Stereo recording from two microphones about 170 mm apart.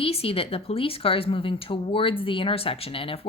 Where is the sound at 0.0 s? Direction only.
35° left (ahead or behind).